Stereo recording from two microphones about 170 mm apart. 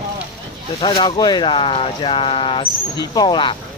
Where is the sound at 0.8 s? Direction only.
25° left (ahead or behind).